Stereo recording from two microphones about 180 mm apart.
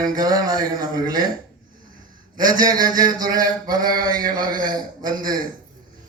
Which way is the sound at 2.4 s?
20° right (ahead or behind).